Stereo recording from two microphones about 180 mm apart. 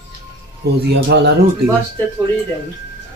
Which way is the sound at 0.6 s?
65° right (ahead or behind).